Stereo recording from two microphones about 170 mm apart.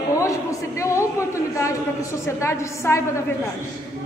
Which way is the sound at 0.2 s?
15° left (ahead or behind).